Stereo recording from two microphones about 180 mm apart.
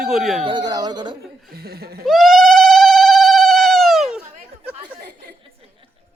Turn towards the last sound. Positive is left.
turn(degrees=-5)  # may be behind; listen again after turning